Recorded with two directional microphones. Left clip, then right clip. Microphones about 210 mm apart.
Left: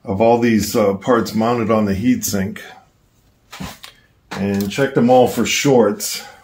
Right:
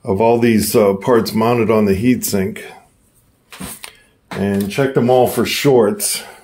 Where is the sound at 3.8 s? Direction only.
40° right (ahead or behind).